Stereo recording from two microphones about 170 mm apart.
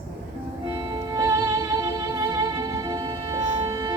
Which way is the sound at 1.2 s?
15° right (ahead or behind).